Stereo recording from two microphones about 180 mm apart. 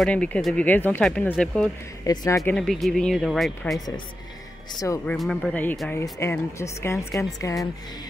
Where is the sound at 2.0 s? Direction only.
15° left (ahead or behind).